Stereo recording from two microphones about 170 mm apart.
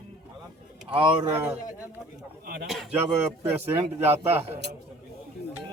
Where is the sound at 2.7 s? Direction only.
Centre (ahead or behind).